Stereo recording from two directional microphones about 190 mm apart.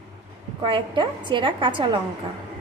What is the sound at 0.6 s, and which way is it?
A woman's voice, 25° right (ahead or behind).